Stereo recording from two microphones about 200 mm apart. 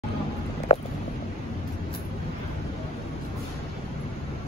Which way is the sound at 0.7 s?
35° left (ahead or behind).